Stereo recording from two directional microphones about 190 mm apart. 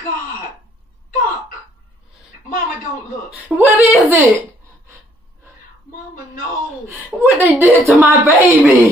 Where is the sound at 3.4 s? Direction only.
10° right (ahead or behind).